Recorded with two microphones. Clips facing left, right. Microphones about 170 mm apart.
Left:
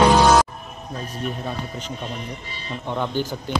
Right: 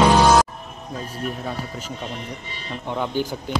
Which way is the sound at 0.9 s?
5° right (ahead or behind).